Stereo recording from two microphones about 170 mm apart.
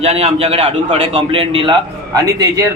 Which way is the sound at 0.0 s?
40° right (ahead or behind).